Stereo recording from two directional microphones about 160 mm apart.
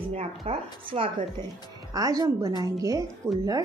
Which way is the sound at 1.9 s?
25° right (ahead or behind).